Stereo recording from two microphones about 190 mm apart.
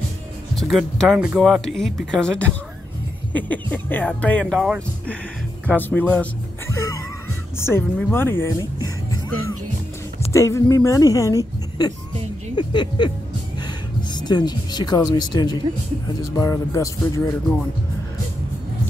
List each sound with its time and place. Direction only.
0.6 s speech: centre (ahead or behind)
7.5 s speech: 15° left (ahead or behind)
10.3 s speech: 15° left (ahead or behind)
14.1 s speech: 25° left (ahead or behind)